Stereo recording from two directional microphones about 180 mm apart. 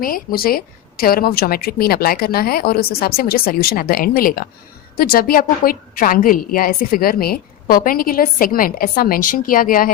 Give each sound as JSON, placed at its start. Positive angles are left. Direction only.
{"t": 0.0, "sound": "a woman's voice", "side_deg": 55}